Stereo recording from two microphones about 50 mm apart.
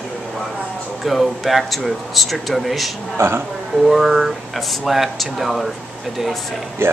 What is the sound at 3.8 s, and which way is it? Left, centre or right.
Speech, centre.